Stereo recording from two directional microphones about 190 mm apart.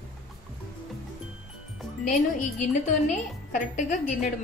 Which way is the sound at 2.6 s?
40° left (ahead or behind).